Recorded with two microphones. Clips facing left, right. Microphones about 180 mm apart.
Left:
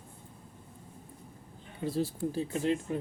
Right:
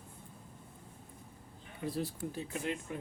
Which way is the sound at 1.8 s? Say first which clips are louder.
Left 5 dB; 25° left (ahead or behind).